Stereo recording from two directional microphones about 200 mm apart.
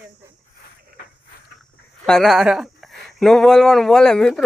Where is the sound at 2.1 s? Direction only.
Centre (ahead or behind).